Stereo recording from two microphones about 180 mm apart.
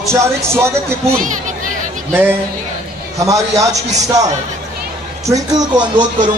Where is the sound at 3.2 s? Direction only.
20° right (ahead or behind).